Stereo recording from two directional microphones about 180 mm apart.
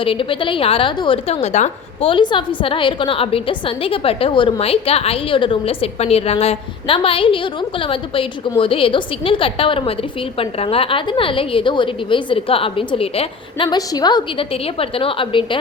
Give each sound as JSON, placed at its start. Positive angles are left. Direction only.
{"t": 0.0, "sound": "a woman's voice", "side_deg": 30}